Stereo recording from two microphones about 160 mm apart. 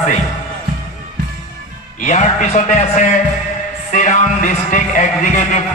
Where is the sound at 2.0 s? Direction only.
50° left (ahead or behind).